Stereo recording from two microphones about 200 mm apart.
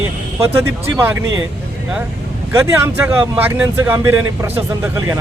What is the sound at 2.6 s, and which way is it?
Speech, 10° right (ahead or behind).